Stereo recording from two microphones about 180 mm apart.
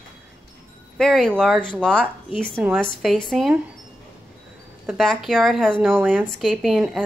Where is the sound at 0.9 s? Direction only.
5° left (ahead or behind).